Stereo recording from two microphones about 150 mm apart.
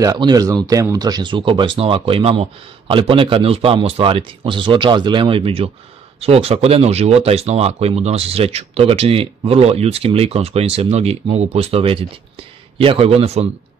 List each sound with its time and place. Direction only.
0.0 s speech: 25° right (ahead or behind); by 13.5 s 40° right (ahead or behind)